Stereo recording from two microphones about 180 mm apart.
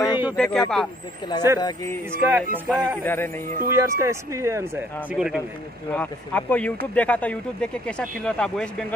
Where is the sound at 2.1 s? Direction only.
10° right (ahead or behind).